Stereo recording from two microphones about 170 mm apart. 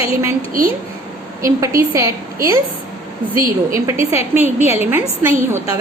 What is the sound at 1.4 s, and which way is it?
A woman's voice, 15° right (ahead or behind).